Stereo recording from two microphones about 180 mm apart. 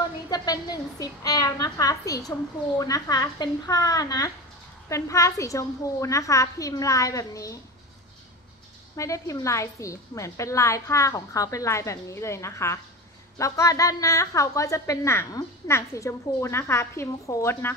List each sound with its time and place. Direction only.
0.3 s a woman's voice: 20° left (ahead or behind)
8.9 s a woman's voice: 15° left (ahead or behind)